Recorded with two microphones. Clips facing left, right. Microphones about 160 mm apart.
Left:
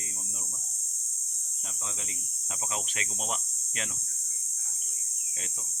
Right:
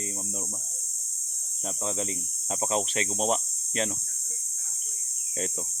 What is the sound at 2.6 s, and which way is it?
Speech, 35° right (ahead or behind).